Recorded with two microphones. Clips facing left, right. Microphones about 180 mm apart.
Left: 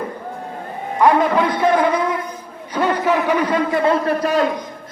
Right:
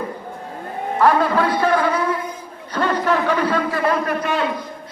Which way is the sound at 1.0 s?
20° left (ahead or behind).